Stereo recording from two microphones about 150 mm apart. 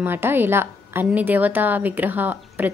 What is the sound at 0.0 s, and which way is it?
Speech, 15° right (ahead or behind).